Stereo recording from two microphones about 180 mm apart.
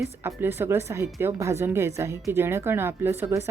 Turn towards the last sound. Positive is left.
turn(degrees=-15)  # may be behind; listen again after turning